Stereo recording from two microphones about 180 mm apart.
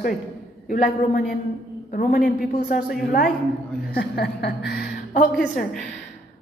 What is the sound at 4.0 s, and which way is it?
Speech, 65° left (ahead or behind).